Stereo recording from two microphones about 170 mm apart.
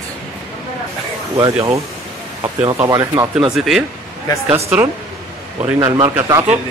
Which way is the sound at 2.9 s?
20° right (ahead or behind).